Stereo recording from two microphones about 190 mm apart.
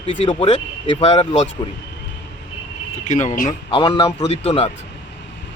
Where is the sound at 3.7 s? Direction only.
30° left (ahead or behind).